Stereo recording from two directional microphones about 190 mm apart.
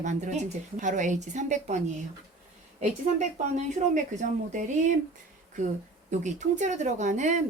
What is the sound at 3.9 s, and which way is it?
A woman's voice, 40° right (ahead or behind).